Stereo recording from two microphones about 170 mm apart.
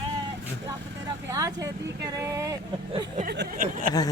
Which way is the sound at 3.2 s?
60° right (ahead or behind).